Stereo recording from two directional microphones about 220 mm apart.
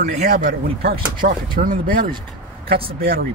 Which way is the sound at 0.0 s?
40° right (ahead or behind).